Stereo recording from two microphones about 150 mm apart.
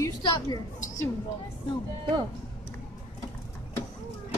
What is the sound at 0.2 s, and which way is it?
Speech, 30° left (ahead or behind).